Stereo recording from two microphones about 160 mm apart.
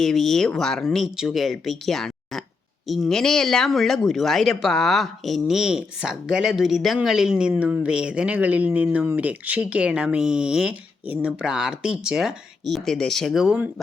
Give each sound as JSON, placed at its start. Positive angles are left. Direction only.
{"t": 0.0, "sound": "speech", "side_deg": 0}